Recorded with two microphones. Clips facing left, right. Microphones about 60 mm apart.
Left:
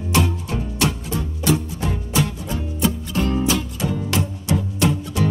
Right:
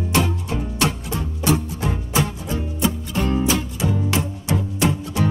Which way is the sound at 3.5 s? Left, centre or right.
Right.